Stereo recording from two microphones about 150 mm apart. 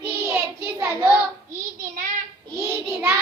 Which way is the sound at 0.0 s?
15° right (ahead or behind).